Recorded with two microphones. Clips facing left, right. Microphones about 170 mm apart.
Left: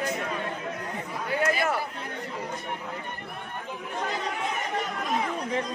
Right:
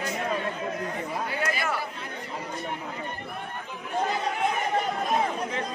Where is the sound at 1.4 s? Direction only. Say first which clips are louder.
Left 6 dB; 45° left (ahead or behind).